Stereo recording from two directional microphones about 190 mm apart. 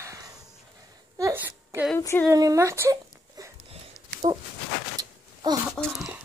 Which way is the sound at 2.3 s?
15° right (ahead or behind).